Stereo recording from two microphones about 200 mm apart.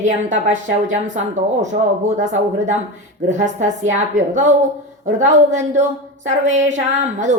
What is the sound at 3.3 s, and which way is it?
Speech, 35° right (ahead or behind).